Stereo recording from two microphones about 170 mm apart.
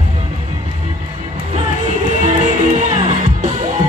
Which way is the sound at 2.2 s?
45° right (ahead or behind).